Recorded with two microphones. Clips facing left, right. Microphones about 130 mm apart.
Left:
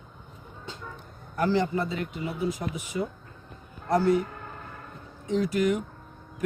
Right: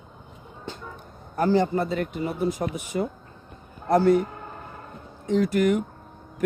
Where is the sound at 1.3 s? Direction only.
40° right (ahead or behind); by 4.2 s 55° right (ahead or behind).